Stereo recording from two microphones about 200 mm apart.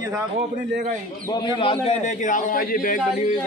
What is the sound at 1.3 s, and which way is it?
A man's voice, 20° left (ahead or behind).